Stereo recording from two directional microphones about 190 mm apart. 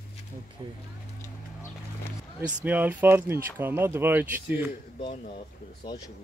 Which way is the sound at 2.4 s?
10° right (ahead or behind).